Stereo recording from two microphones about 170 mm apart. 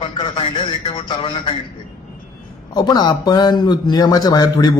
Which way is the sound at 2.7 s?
25° left (ahead or behind).